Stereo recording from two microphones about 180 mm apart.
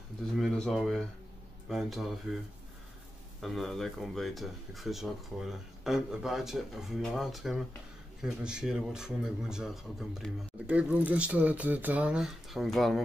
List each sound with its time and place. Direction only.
0.4 s a man's voice: centre (ahead or behind)
3.3 s a man's voice: centre (ahead or behind)